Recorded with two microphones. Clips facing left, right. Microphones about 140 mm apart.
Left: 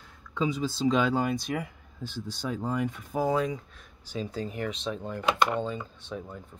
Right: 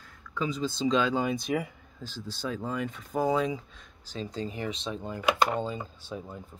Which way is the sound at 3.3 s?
Centre (ahead or behind).